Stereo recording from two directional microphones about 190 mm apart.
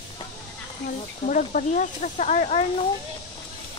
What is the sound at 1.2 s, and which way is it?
Speech, 40° left (ahead or behind).